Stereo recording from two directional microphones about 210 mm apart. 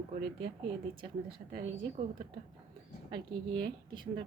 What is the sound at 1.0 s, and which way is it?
A woman's voice, 25° right (ahead or behind).